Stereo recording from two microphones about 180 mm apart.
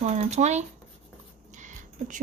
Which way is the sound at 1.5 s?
45° right (ahead or behind).